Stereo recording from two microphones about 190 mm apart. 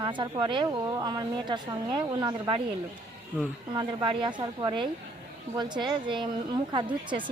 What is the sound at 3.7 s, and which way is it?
Speech, 25° right (ahead or behind).